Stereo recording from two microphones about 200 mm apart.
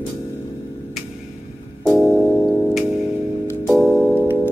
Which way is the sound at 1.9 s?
Centre (ahead or behind).